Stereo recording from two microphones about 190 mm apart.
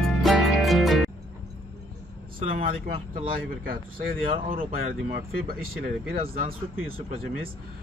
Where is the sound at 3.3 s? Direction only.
50° right (ahead or behind).